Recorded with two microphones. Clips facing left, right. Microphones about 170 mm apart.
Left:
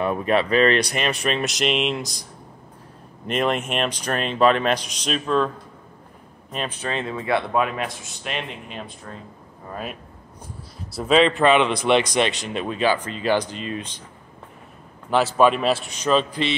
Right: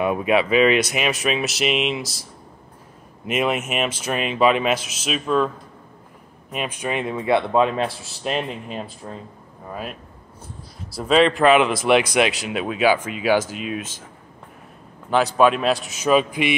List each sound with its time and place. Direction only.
0.0 s speech: 10° right (ahead or behind)
3.3 s speech: 5° right (ahead or behind)
6.5 s speech: 10° right (ahead or behind); by 8.8 s 35° right (ahead or behind)
9.1 s speech: 15° right (ahead or behind)
11.0 s speech: centre (ahead or behind)
15.0 s speech: centre (ahead or behind)